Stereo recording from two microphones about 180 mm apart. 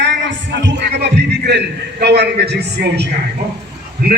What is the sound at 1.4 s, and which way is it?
A man's voice, 65° right (ahead or behind).